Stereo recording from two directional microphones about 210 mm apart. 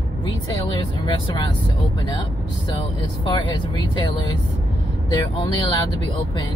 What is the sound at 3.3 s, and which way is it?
Speech, 20° left (ahead or behind).